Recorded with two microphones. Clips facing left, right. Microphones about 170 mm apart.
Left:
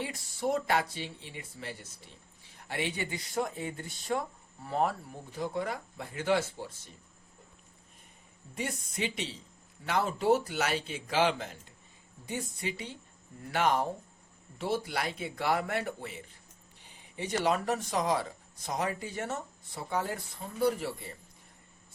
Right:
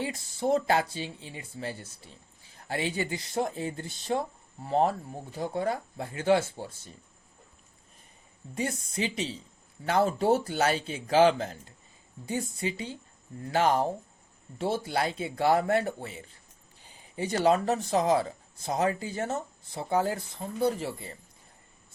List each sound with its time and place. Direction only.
0.0 s speech: 25° right (ahead or behind)
8.6 s speech: 35° right (ahead or behind)
17.2 s speech: 30° right (ahead or behind)